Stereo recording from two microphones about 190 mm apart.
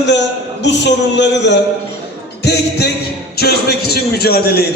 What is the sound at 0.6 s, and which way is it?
A man's voice, 65° left (ahead or behind).